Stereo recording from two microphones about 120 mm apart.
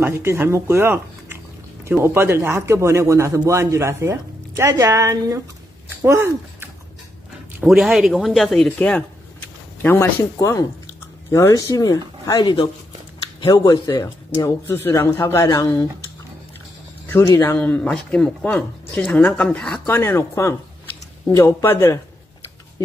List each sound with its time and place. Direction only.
0.0 s speech: 20° right (ahead or behind)
7.6 s speech: 5° right (ahead or behind)
8.6 s a man's voice: 10° left (ahead or behind); by 15.8 s 30° left (ahead or behind)
17.1 s speech: 20° left (ahead or behind)
20.0 s a man's voice: 20° left (ahead or behind)